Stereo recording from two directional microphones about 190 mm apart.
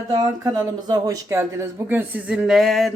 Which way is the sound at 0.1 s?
20° right (ahead or behind).